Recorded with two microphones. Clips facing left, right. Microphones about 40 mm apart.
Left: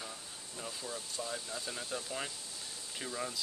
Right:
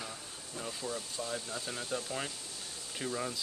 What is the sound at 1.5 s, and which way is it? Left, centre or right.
Speech, centre.